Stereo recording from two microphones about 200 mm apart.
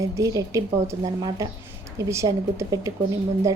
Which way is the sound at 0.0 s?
15° right (ahead or behind).